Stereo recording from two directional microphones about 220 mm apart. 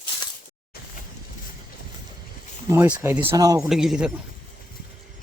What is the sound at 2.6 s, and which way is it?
Speech, 10° right (ahead or behind).